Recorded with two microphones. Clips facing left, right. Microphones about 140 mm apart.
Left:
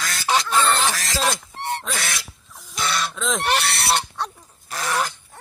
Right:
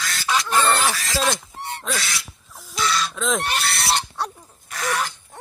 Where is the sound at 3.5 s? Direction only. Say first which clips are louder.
Left 2 dB; 70° left (ahead or behind).